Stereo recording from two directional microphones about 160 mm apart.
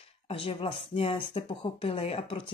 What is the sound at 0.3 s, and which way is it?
Speech, 35° left (ahead or behind).